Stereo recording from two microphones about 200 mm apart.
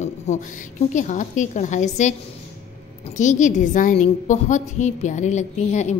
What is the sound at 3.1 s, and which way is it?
A woman's voice, 40° left (ahead or behind).